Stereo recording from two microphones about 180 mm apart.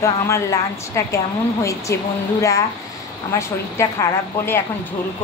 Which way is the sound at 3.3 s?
15° left (ahead or behind).